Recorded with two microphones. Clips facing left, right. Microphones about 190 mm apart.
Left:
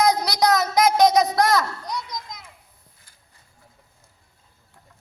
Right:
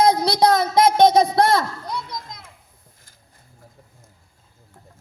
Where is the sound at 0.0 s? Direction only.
25° right (ahead or behind).